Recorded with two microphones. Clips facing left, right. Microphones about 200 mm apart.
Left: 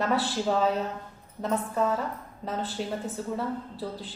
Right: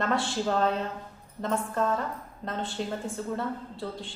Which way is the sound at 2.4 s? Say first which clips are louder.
Left 1 dB; 5° left (ahead or behind).